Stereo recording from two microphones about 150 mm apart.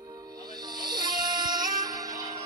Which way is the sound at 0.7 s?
30° right (ahead or behind).